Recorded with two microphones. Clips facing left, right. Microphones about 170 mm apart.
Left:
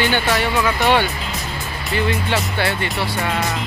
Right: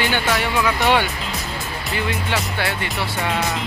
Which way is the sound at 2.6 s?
Centre (ahead or behind).